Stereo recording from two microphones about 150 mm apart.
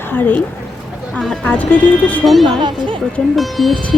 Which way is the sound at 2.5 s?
30° right (ahead or behind).